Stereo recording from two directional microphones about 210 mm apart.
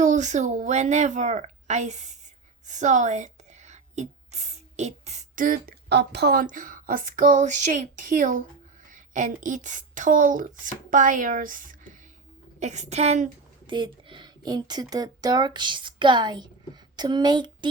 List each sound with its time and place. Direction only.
0.0 s a woman's voice: 35° right (ahead or behind)
13.7 s speech: 20° right (ahead or behind)